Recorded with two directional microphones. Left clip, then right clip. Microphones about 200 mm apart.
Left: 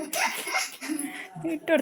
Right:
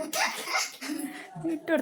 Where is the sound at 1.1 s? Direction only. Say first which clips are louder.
Left 1 dB; 10° left (ahead or behind).